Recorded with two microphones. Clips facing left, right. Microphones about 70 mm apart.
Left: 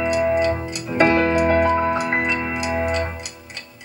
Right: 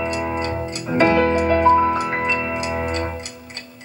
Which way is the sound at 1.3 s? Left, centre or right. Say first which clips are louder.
Right 2 dB; left.